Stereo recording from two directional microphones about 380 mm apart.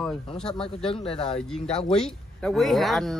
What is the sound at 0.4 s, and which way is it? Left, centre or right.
Speech, centre.